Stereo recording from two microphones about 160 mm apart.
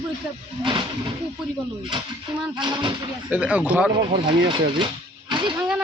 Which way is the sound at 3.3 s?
10° right (ahead or behind).